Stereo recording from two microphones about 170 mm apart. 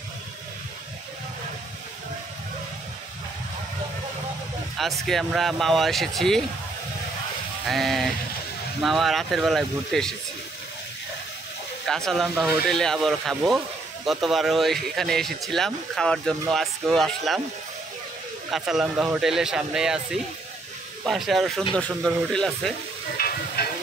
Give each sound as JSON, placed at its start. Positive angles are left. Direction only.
{"t": 5.0, "sound": "speech", "side_deg": 0}
{"t": 7.6, "sound": "speech", "side_deg": 0}
{"t": 11.8, "sound": "speech", "side_deg": 0}
{"t": 18.5, "sound": "speech", "side_deg": -5}
{"t": 23.1, "sound": "stir", "side_deg": 60}